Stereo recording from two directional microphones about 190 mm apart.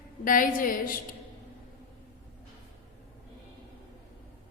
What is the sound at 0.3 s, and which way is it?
Speech, 45° left (ahead or behind).